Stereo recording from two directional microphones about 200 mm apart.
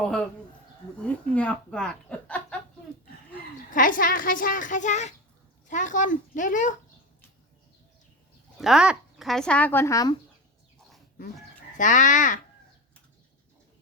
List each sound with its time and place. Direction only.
0.0 s speech: 5° left (ahead or behind)
3.7 s speech: 40° left (ahead or behind)
8.5 s speech: centre (ahead or behind); by 10.2 s 15° left (ahead or behind)
11.8 s speech: 40° left (ahead or behind)